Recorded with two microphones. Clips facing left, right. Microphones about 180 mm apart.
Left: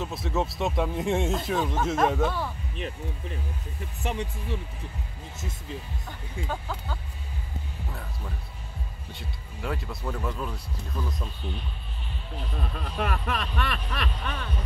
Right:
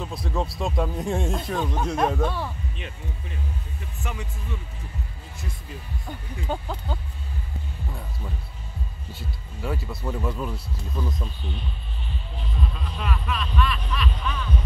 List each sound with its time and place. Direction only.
0.0 s speech: 5° left (ahead or behind)
4.0 s speech: 30° left (ahead or behind)
6.5 s speech: 25° right (ahead or behind)
9.1 s speech: centre (ahead or behind)
12.5 s speech: 50° left (ahead or behind)